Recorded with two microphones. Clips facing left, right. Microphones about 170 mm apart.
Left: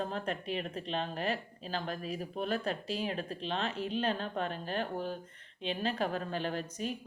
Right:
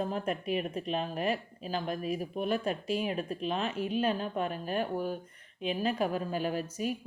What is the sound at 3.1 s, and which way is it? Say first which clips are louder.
Speech: right 3 dB; 10° right (ahead or behind).